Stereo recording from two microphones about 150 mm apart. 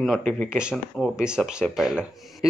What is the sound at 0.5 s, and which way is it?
Speech, 5° right (ahead or behind).